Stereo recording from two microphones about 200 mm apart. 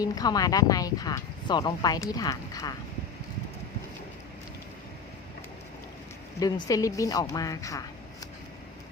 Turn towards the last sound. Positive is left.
turn(degrees=15)  # may be behind; listen again after turning